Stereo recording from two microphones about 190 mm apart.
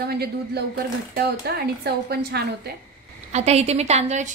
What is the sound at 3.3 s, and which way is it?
Speech, 35° right (ahead or behind).